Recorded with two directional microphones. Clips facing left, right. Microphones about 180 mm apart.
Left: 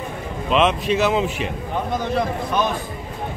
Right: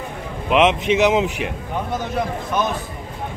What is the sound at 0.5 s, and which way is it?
A man's voice, 20° right (ahead or behind).